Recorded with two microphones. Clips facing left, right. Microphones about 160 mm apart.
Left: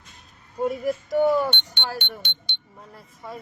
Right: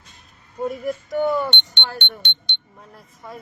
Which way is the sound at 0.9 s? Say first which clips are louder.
Left 2 dB; 35° left (ahead or behind).